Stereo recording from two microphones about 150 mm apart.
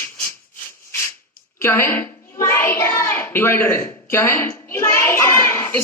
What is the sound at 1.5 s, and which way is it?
A child's voice, 15° left (ahead or behind).